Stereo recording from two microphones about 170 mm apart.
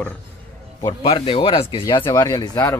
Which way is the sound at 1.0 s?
35° left (ahead or behind).